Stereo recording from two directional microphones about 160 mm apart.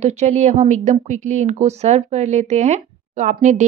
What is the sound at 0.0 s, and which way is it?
Speech, 45° right (ahead or behind).